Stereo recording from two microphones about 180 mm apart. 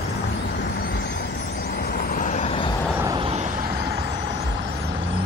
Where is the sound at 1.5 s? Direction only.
60° left (ahead or behind); by 2.7 s 30° left (ahead or behind).